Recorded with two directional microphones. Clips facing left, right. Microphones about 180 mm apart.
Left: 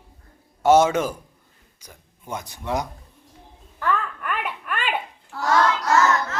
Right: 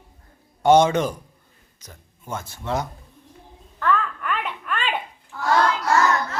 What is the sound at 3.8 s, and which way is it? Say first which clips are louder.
Babbling: right 2 dB; 10° left (ahead or behind).